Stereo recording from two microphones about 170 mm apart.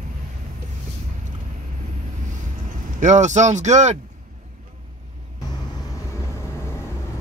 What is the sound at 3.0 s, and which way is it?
Speech, 45° right (ahead or behind).